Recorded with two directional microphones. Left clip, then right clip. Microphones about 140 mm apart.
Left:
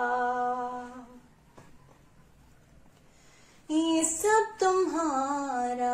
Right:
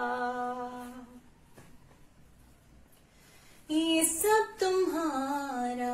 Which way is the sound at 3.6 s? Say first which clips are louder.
Left 1 dB; 20° right (ahead or behind).